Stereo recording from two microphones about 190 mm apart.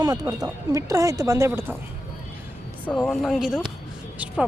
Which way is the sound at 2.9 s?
5° left (ahead or behind).